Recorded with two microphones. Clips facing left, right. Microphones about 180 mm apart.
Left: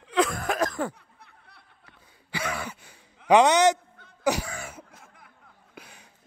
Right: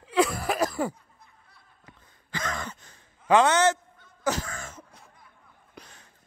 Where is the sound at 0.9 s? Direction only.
70° left (ahead or behind).